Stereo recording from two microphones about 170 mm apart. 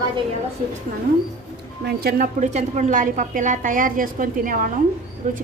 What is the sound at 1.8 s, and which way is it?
Speech, 65° right (ahead or behind).